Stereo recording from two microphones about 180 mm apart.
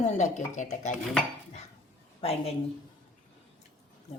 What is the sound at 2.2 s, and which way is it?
Speech, 35° left (ahead or behind).